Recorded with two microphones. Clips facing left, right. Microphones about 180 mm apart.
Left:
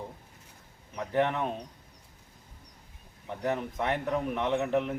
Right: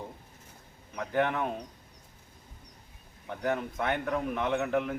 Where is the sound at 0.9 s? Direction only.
Centre (ahead or behind).